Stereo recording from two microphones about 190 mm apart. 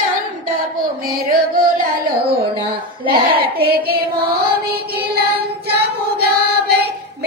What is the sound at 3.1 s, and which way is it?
Hands, 30° right (ahead or behind).